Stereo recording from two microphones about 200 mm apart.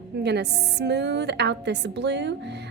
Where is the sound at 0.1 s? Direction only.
55° right (ahead or behind).